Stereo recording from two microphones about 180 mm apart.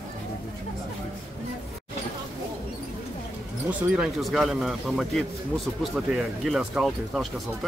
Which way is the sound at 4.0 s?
Centre (ahead or behind).